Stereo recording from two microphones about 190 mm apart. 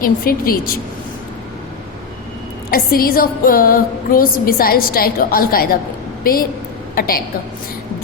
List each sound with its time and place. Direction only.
0.0 s music: 50° left (ahead or behind)
2.6 s music: 50° left (ahead or behind)